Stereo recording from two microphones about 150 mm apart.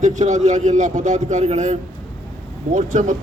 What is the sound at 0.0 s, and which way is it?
A man's voice, 55° right (ahead or behind).